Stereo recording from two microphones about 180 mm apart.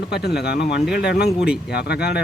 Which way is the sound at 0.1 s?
65° left (ahead or behind).